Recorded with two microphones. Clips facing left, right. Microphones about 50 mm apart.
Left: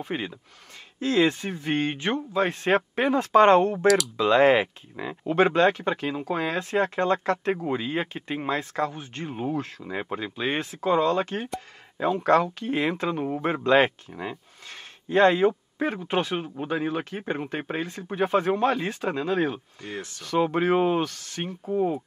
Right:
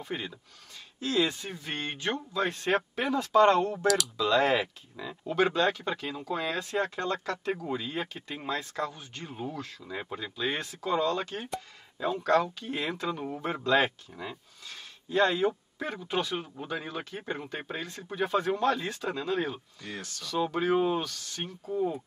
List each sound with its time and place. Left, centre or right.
0.0 s speech: left
0.9 s speech: left
3.8 s speech: centre
4.2 s speech: left